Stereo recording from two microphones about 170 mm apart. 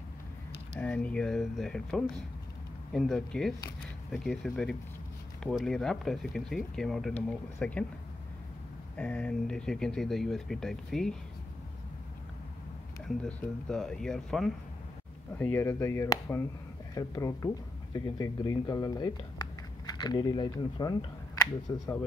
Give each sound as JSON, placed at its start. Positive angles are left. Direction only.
{"t": 0.7, "sound": "speech", "side_deg": 10}
{"t": 8.9, "sound": "speech", "side_deg": 5}
{"t": 13.2, "sound": "speech", "side_deg": 5}